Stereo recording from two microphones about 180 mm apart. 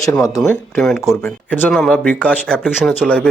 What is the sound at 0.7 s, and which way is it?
A man's voice, centre (ahead or behind).